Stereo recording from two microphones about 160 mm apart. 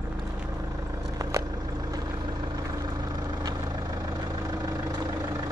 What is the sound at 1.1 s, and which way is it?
Vehicle, 20° right (ahead or behind).